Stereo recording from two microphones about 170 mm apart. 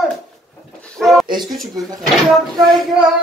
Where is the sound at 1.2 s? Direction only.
25° right (ahead or behind).